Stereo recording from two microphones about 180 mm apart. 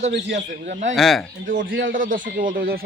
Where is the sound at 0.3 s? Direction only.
45° right (ahead or behind).